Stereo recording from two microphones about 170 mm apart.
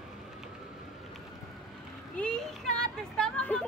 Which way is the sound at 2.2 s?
5° left (ahead or behind).